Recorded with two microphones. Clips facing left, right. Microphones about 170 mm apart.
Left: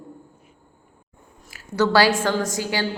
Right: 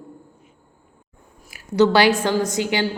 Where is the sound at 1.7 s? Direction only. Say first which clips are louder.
Right 3 dB; 20° right (ahead or behind).